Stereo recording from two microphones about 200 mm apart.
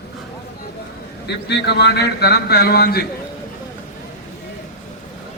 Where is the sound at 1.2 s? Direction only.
55° left (ahead or behind).